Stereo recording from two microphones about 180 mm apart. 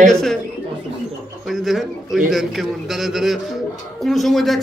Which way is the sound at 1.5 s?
Centre (ahead or behind).